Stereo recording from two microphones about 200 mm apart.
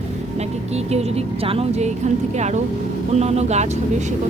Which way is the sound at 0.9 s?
30° right (ahead or behind).